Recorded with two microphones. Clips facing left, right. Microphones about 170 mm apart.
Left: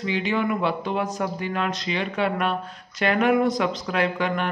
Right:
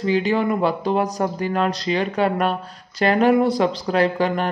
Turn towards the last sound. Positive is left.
turn(degrees=-35)  # may be behind; listen again after turning